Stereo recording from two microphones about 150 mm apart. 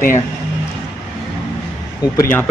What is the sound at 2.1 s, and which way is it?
Speech, 20° left (ahead or behind).